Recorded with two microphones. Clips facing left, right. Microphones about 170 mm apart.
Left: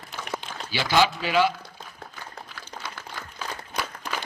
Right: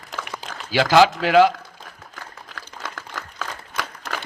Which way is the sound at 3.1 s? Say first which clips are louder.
Right 2 dB; 85° right.